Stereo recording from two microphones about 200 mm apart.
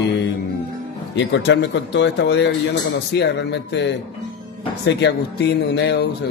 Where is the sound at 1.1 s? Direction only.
60° left (ahead or behind).